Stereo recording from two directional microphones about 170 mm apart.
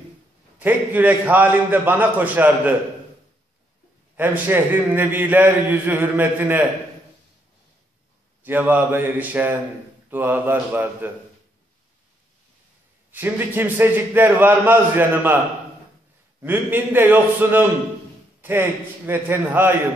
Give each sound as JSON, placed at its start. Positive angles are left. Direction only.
{"t": 0.6, "sound": "a man's voice", "side_deg": -10}
{"t": 4.2, "sound": "a man's voice", "side_deg": -10}
{"t": 8.4, "sound": "a man's voice", "side_deg": -10}
{"t": 13.1, "sound": "a man's voice", "side_deg": -10}
{"t": 16.4, "sound": "a man's voice", "side_deg": -10}